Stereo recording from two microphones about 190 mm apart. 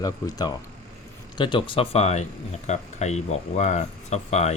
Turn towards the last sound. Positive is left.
turn(degrees=35)  # may be behind; listen again after turning